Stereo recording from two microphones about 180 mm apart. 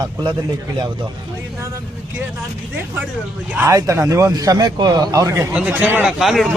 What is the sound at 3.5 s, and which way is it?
Speech, 10° right (ahead or behind).